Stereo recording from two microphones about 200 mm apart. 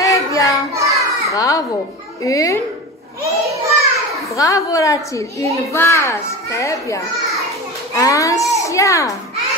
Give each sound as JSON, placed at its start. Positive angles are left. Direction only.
{"t": 0.0, "sound": "child singing", "side_deg": 15}
{"t": 0.7, "sound": "children playing", "side_deg": -15}
{"t": 1.3, "sound": "speech", "side_deg": 15}
{"t": 3.4, "sound": "a sound", "side_deg": -15}
{"t": 4.4, "sound": "speech", "side_deg": 15}